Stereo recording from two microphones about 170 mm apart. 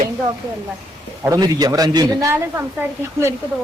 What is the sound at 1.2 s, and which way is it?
A man's voice, 20° right (ahead or behind).